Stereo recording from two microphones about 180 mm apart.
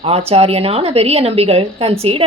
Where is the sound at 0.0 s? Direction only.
35° right (ahead or behind).